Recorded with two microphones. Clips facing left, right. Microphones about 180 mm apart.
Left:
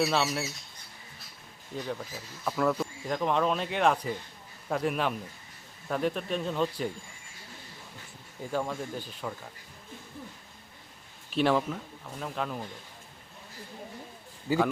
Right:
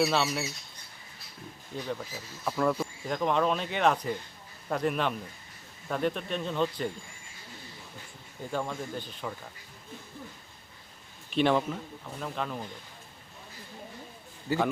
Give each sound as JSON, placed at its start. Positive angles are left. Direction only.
{"t": 0.0, "sound": "speech", "side_deg": 0}
{"t": 1.7, "sound": "speech", "side_deg": 0}
{"t": 8.4, "sound": "speech", "side_deg": 5}
{"t": 11.3, "sound": "speech", "side_deg": 0}